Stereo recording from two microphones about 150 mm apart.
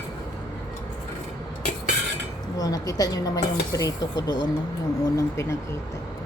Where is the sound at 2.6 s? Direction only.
25° left (ahead or behind).